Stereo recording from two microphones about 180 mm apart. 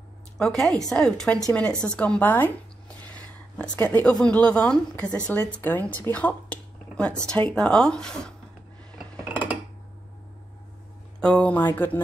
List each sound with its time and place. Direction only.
0.4 s a woman's voice: 5° left (ahead or behind)
3.0 s a sound: 10° left (ahead or behind)
3.6 s a woman's voice: 20° left (ahead or behind)
3.9 s a woman's voice: 5° left (ahead or behind)
9.3 s a sound: 10° right (ahead or behind)
11.1 s a woman's voice: 5° left (ahead or behind)